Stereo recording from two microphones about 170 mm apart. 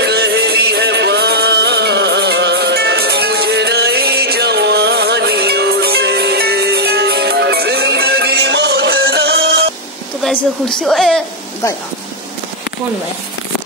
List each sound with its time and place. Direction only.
0.0 s music: 75° right (ahead or behind)
10.8 s a woman's voice: 5° left (ahead or behind)